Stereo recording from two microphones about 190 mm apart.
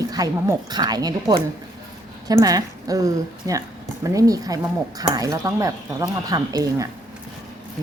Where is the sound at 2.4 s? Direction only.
20° right (ahead or behind).